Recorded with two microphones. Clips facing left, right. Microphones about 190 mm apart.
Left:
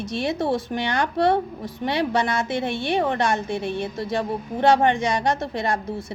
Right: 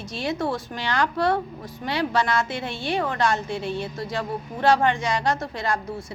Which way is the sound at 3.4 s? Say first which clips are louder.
Left 2 dB; 55° left (ahead or behind).